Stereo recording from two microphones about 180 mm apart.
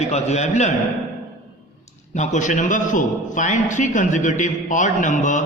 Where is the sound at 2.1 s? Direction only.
40° left (ahead or behind).